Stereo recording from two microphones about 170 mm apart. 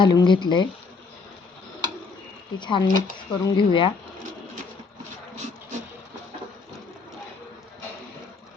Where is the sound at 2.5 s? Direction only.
25° left (ahead or behind).